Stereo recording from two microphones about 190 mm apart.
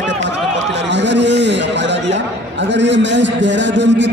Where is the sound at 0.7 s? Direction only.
65° right (ahead or behind).